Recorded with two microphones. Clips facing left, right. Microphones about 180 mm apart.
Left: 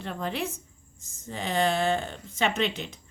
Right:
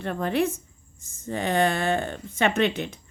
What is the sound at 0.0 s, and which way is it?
Speech, 55° right (ahead or behind).